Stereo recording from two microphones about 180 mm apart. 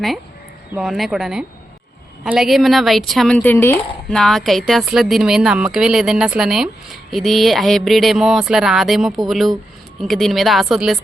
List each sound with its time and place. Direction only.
0.7 s speech: centre (ahead or behind)
4.2 s speech: centre (ahead or behind)